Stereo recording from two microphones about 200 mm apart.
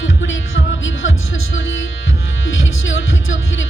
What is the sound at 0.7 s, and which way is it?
Music, 70° left (ahead or behind).